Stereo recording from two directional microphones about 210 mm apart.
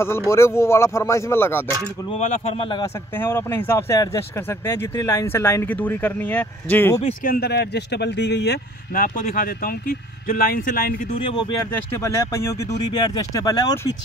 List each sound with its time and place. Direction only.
0.3 s speech: 15° left (ahead or behind)
2.0 s a man's voice: 30° left (ahead or behind)
3.2 s speech: 10° left (ahead or behind)
7.2 s speech: 50° left (ahead or behind)
11.7 s speech: 10° left (ahead or behind)